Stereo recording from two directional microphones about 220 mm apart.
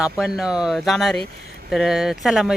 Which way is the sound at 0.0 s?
Centre (ahead or behind).